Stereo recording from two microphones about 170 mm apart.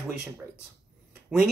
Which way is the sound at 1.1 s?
10° right (ahead or behind).